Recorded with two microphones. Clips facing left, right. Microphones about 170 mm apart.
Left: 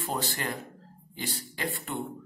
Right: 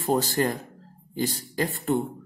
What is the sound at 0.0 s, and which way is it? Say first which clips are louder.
Speech: right 9 dB; 40° right (ahead or behind).